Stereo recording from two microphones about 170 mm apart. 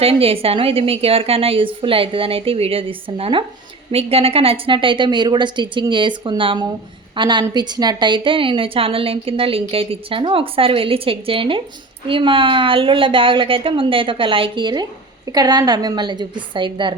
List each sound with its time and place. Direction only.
0.0 s a woman's voice: 35° right (ahead or behind)